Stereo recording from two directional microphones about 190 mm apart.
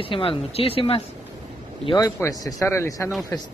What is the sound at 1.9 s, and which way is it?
Speech, 15° left (ahead or behind).